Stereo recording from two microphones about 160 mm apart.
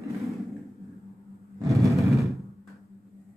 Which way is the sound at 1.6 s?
20° right (ahead or behind).